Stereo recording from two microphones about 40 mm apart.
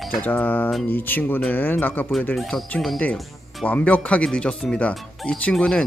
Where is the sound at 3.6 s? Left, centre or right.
Left.